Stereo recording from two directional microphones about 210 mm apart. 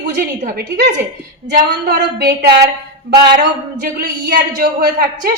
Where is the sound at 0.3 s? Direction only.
40° right (ahead or behind).